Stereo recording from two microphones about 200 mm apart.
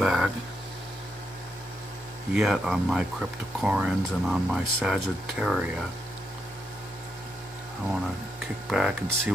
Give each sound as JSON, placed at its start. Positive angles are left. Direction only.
{"t": 0.0, "sound": "a sound", "side_deg": -5}
{"t": 2.3, "sound": "speech", "side_deg": -5}
{"t": 8.6, "sound": "speech", "side_deg": 0}